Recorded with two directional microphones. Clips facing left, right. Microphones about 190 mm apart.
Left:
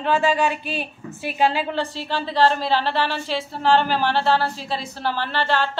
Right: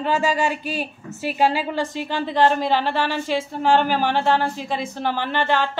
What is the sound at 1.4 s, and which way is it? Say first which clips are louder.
A woman's voice: even; 10° right (ahead or behind).